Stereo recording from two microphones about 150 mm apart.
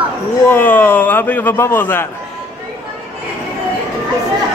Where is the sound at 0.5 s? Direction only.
10° left (ahead or behind).